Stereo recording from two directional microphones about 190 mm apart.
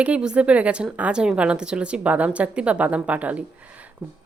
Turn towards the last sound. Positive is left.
turn(degrees=-10)  # may be behind; listen again after turning